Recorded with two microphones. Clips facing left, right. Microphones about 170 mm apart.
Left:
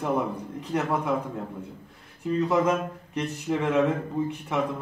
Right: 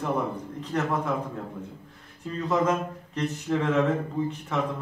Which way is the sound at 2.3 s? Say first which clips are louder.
Left 2 dB; 10° left (ahead or behind).